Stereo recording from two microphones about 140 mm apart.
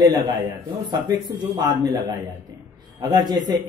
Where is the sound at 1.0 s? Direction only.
30° right (ahead or behind).